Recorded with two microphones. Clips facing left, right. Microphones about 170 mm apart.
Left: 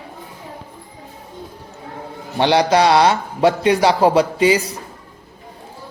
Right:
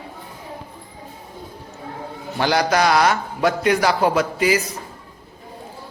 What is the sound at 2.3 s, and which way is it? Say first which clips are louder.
A man's voice: left 4 dB; 30° left (ahead or behind).